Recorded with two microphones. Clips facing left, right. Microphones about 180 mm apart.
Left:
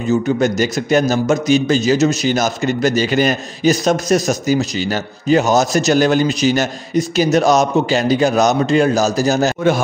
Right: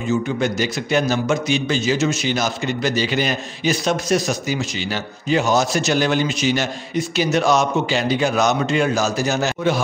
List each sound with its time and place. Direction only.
0.1 s a man's voice: 45° left (ahead or behind)